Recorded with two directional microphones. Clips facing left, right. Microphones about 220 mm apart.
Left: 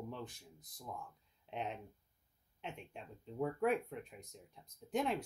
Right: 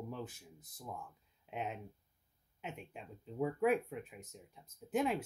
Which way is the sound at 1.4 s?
5° right (ahead or behind).